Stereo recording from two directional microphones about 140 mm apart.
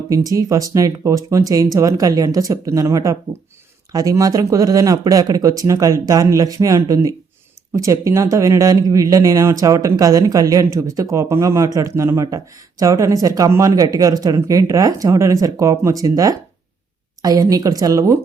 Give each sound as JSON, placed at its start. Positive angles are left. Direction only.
{"t": 0.1, "sound": "speech", "side_deg": -25}